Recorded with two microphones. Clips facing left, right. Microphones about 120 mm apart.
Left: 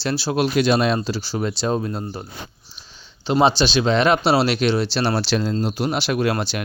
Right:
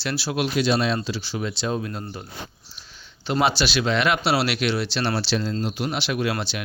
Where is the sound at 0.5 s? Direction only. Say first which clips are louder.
Left 3 dB; 55° left (ahead or behind).